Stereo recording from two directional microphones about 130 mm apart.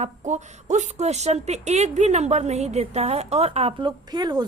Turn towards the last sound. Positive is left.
turn(degrees=-30)  # may be behind; listen again after turning